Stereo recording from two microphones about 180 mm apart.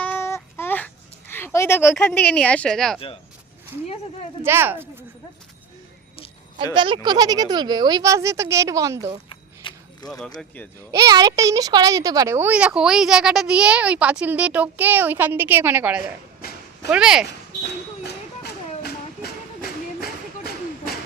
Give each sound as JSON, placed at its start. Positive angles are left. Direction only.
{"t": 0.0, "sound": "child singing", "side_deg": 10}
{"t": 1.3, "sound": "speech", "side_deg": 10}
{"t": 4.4, "sound": "speech", "side_deg": -10}
{"t": 6.1, "sound": "a sound", "side_deg": 30}
{"t": 6.7, "sound": "speech", "side_deg": -25}
{"t": 9.3, "sound": "a sound", "side_deg": 25}
{"t": 10.1, "sound": "speech", "side_deg": 5}
{"t": 10.9, "sound": "speech", "side_deg": -20}
{"t": 18.0, "sound": "music", "side_deg": 65}